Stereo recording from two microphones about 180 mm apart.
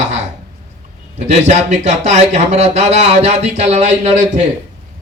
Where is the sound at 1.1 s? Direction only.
40° right (ahead or behind).